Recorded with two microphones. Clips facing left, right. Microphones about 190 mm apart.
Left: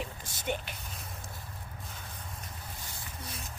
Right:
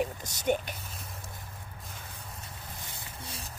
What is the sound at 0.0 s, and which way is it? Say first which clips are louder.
Speech: right 7 dB; 45° right (ahead or behind).